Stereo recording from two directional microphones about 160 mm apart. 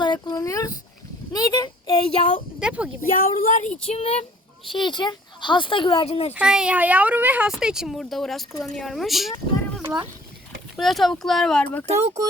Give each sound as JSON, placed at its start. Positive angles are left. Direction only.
{"t": 0.0, "sound": "a sound", "side_deg": 25}
{"t": 2.6, "sound": "speech", "side_deg": -5}
{"t": 3.0, "sound": "a woman's voice", "side_deg": 60}
{"t": 3.9, "sound": "speech", "side_deg": 40}
{"t": 4.7, "sound": "speech", "side_deg": 30}
{"t": 6.3, "sound": "speech", "side_deg": -5}
{"t": 9.8, "sound": "speech", "side_deg": -25}
{"t": 10.8, "sound": "speech", "side_deg": 0}